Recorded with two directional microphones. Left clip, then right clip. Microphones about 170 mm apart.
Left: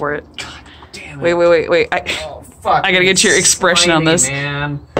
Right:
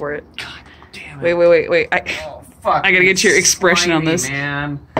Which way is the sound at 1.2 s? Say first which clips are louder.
Even; 10° right (ahead or behind).